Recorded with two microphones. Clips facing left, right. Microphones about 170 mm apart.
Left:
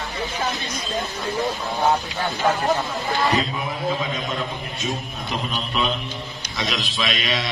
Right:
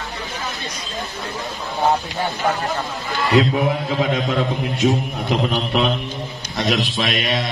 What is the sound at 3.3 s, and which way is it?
A man's voice, 65° right (ahead or behind).